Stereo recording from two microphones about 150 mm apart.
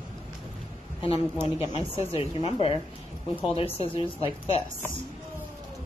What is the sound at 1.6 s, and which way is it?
A woman's voice, 40° left (ahead or behind).